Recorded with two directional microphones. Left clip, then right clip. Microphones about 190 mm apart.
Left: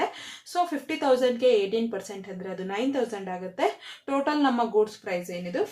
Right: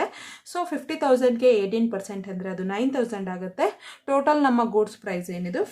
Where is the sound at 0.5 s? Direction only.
20° right (ahead or behind).